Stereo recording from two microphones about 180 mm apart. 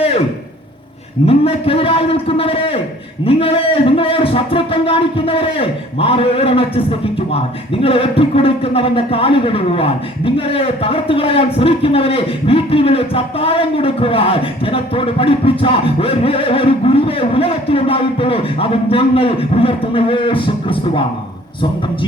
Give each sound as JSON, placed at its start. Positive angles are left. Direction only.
{"t": 1.3, "sound": "a man's voice", "side_deg": 30}